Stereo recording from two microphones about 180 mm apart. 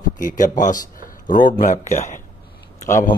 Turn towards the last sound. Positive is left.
turn(degrees=15)  # may be behind; listen again after turning